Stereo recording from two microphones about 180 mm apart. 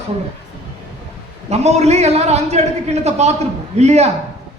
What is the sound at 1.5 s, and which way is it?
A man's voice, 35° right (ahead or behind).